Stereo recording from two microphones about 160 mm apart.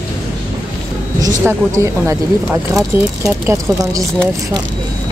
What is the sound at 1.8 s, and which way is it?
Speech, 20° right (ahead or behind).